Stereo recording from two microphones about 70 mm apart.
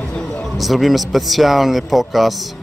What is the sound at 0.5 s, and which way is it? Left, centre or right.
Speech, centre.